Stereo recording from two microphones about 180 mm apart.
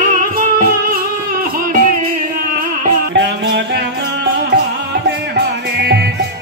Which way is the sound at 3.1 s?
80° right.